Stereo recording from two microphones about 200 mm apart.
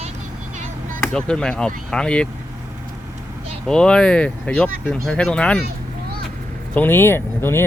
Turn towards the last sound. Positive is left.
turn(degrees=10)  # may be behind; listen again after turning